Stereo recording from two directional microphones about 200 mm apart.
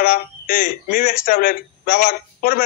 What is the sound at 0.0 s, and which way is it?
A man's voice, 45° left (ahead or behind).